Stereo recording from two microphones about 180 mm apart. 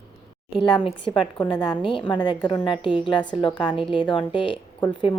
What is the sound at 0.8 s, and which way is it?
A woman's voice, 25° left (ahead or behind).